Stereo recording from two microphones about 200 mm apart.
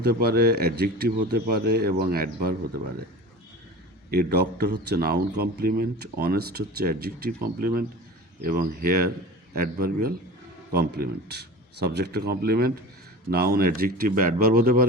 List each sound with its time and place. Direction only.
0.0 s a man's voice: 50° right (ahead or behind)
4.1 s a man's voice: 50° right (ahead or behind)